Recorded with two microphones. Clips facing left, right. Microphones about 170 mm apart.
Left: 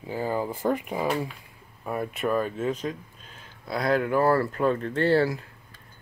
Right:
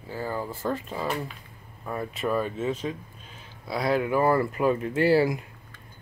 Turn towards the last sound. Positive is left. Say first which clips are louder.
# right 1 dB
turn(degrees=-15)  # may be behind; listen again after turning